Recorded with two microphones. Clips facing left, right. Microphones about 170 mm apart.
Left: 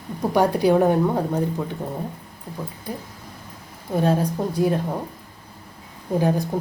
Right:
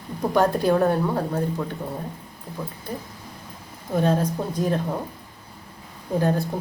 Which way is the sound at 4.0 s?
10° left (ahead or behind).